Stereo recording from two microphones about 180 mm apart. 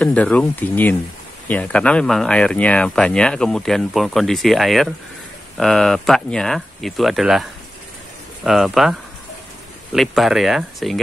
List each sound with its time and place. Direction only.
0.0 s speech: 5° left (ahead or behind)
8.5 s speech: centre (ahead or behind)
9.9 s speech: centre (ahead or behind)